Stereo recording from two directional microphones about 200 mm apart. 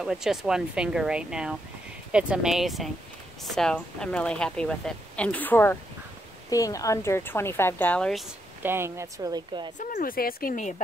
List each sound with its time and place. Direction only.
0.0 s speech: 5° right (ahead or behind)
8.6 s speech: 10° right (ahead or behind)
9.8 s speech: 45° left (ahead or behind)